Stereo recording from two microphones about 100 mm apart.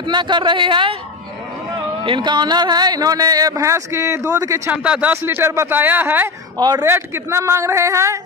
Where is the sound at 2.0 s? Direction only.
55° right (ahead or behind); by 4.7 s 30° right (ahead or behind).